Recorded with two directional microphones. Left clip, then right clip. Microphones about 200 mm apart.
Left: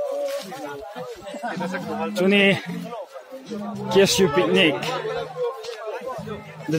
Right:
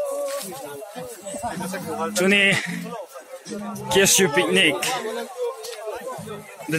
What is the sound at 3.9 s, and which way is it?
Speech, 5° left (ahead or behind).